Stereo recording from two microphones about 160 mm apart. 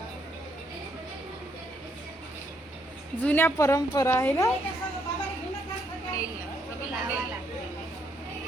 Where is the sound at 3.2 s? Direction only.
10° left (ahead or behind).